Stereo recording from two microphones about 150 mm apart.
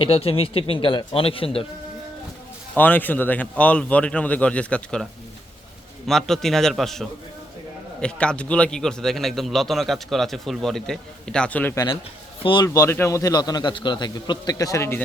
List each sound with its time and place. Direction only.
0.0 s speech: 40° left (ahead or behind)
2.7 s speech: 10° left (ahead or behind)
6.1 s a man's voice: centre (ahead or behind)
12.4 s a man's voice: 35° left (ahead or behind)
12.6 s a man's voice: 20° left (ahead or behind)